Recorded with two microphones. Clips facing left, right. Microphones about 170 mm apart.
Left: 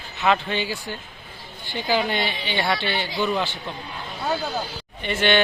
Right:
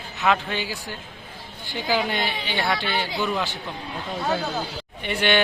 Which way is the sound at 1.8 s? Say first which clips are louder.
Left 1 dB; 5° right (ahead or behind).